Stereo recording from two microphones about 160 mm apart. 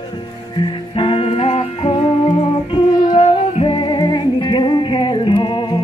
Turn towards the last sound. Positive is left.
turn(degrees=30)  # may be behind; listen again after turning